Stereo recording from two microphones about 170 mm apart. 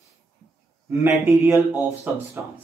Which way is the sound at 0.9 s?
15° right (ahead or behind).